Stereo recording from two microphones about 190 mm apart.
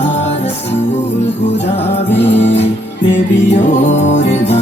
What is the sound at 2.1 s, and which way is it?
Music, 65° left (ahead or behind).